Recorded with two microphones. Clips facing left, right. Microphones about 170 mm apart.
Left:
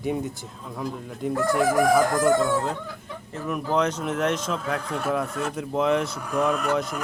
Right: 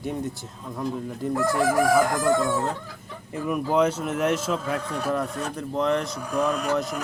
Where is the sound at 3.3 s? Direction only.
10° right (ahead or behind).